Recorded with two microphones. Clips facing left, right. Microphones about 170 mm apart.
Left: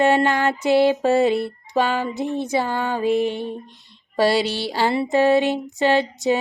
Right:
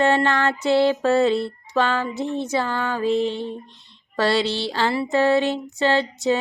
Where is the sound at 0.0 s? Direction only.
15° left (ahead or behind).